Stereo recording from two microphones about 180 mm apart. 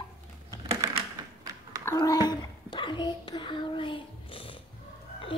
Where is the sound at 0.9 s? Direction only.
20° right (ahead or behind).